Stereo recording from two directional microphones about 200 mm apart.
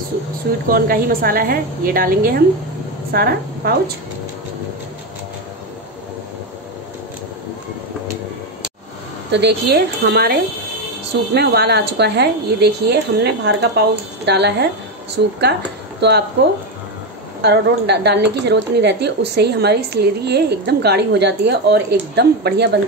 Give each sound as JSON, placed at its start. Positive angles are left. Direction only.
{"t": 0.7, "sound": "a woman's voice", "side_deg": -50}
{"t": 9.3, "sound": "speech", "side_deg": -55}
{"t": 17.4, "sound": "speech", "side_deg": -55}